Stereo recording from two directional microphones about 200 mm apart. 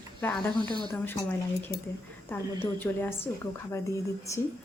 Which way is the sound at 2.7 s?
10° left (ahead or behind).